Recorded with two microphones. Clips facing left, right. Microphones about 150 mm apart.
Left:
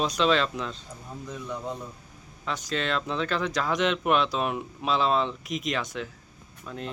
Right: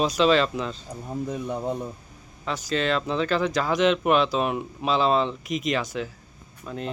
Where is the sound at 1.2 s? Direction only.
50° right (ahead or behind).